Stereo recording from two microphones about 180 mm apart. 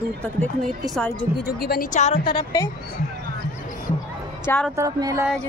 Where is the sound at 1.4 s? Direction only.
60° left (ahead or behind); by 2.2 s 40° left (ahead or behind).